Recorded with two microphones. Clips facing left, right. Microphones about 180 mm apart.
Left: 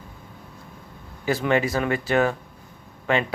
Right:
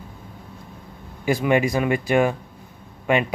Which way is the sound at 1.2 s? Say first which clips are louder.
Right 2 dB; 15° right (ahead or behind).